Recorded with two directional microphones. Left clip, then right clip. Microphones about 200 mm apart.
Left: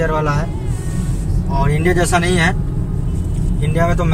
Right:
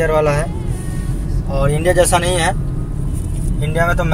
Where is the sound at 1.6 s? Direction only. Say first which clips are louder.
Right 3 dB; 50° right (ahead or behind).